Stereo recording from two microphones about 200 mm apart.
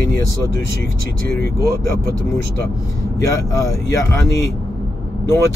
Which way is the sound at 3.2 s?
15° left (ahead or behind).